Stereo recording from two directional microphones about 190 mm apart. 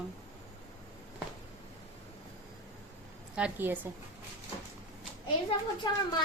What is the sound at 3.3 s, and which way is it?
Speech, 10° right (ahead or behind).